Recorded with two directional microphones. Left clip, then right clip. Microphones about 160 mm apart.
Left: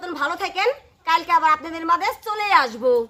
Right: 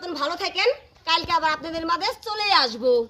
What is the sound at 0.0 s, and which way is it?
A woman's voice, 15° left (ahead or behind).